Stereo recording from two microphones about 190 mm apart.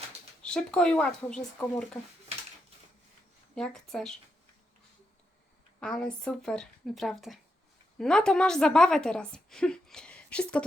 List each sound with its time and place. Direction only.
0.4 s speech: 5° left (ahead or behind)
3.5 s speech: 5° left (ahead or behind)
5.8 s a woman's voice: 5° left (ahead or behind)